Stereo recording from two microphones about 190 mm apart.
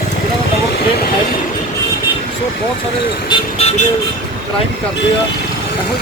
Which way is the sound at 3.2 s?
30° left (ahead or behind).